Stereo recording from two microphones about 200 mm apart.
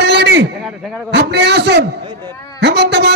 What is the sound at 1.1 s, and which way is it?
A man's voice, 55° right (ahead or behind).